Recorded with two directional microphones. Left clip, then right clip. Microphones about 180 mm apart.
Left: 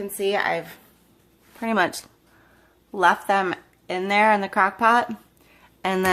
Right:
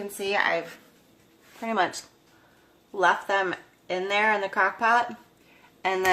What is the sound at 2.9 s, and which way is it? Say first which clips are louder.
Speech: left 4 dB; 60° left (ahead or behind).